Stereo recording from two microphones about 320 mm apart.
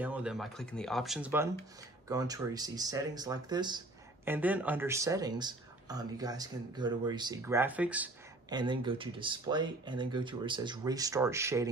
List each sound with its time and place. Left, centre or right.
0.0 s speech: centre